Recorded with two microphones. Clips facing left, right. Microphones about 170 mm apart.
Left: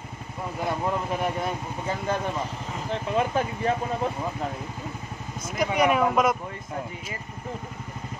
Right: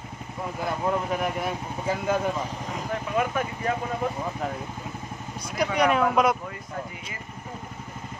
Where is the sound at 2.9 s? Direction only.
30° left (ahead or behind).